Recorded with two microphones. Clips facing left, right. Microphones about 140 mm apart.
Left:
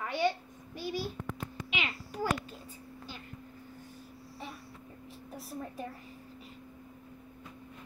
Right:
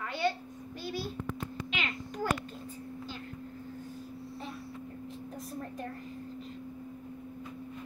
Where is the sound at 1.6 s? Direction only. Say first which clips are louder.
Left 2 dB; 5° left (ahead or behind).